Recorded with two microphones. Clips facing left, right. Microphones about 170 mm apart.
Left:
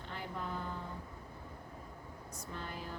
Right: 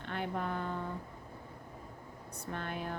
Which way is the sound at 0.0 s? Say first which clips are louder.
Right 6 dB; 60° right (ahead or behind).